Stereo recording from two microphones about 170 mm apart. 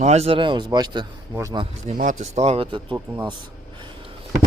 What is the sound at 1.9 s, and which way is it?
A man's voice, 45° right (ahead or behind).